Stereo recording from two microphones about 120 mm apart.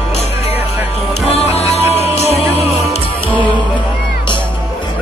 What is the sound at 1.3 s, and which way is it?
Music, 60° left (ahead or behind).